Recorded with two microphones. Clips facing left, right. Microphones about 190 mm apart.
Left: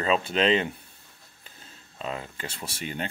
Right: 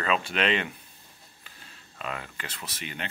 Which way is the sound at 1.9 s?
30° left (ahead or behind).